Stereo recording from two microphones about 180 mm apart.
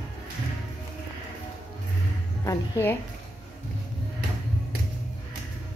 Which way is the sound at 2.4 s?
15° left (ahead or behind).